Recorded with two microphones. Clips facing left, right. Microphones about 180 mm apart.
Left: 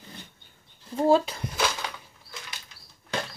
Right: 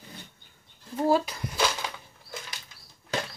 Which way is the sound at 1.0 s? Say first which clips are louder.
Left 3 dB; 25° left (ahead or behind).